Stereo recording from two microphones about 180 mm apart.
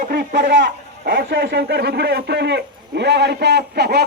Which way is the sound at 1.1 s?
55° right (ahead or behind).